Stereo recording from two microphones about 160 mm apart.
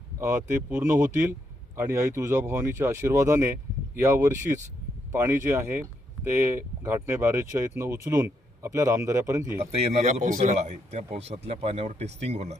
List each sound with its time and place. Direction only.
0.2 s speech: 15° right (ahead or behind)
9.6 s speech: 40° right (ahead or behind)